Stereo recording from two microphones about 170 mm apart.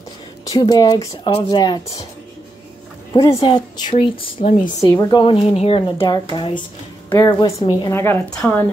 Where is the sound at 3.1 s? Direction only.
20° left (ahead or behind).